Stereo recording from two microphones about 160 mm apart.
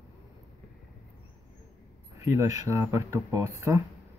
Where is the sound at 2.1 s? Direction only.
20° right (ahead or behind).